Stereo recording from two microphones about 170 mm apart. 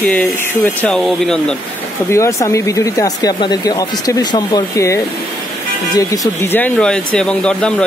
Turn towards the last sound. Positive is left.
turn(degrees=5)  # may be behind; listen again after turning